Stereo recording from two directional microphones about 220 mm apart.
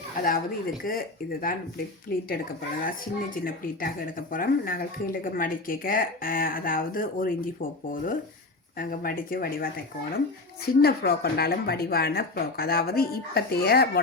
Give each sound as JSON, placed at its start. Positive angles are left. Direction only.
{"t": 0.2, "sound": "speech", "side_deg": 40}
{"t": 3.3, "sound": "speech", "side_deg": 40}
{"t": 10.8, "sound": "speech", "side_deg": 45}